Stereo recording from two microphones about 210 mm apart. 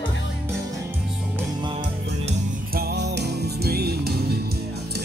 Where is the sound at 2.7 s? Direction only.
50° right (ahead or behind).